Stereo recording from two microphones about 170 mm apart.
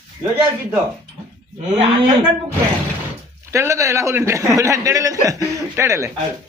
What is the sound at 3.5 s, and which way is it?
A man's voice, 15° right (ahead or behind).